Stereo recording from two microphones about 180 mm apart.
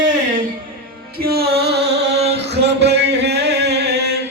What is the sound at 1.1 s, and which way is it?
Music, 60° right (ahead or behind).